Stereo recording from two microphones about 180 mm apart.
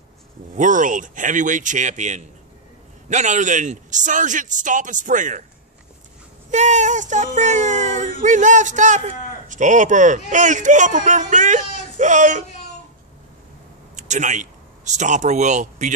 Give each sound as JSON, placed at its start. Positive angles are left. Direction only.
{"t": 0.6, "sound": "speech", "side_deg": -45}
{"t": 6.5, "sound": "speech", "side_deg": -40}
{"t": 13.9, "sound": "speech", "side_deg": -40}